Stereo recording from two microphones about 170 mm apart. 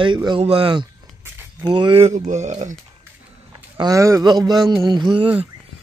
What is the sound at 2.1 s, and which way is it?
Speech, 45° right (ahead or behind).